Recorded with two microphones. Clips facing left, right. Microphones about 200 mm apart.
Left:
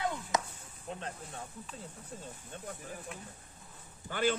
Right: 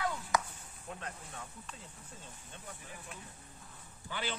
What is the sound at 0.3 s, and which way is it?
Chop, 20° left (ahead or behind).